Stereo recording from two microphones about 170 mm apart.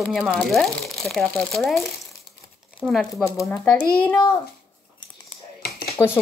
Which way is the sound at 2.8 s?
5° right (ahead or behind).